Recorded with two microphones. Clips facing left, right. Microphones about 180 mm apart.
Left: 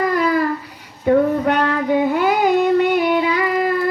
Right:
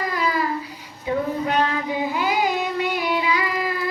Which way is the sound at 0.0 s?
55° left (ahead or behind).